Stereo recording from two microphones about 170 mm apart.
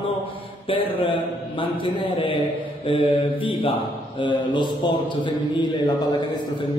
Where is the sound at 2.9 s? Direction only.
30° left (ahead or behind).